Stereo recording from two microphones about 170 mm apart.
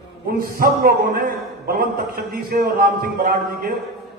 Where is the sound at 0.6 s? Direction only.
65° right (ahead or behind).